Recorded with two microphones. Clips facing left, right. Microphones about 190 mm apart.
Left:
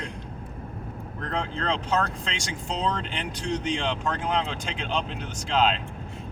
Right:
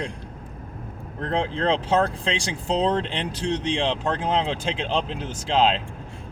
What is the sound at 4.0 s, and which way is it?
Speech, 35° right (ahead or behind).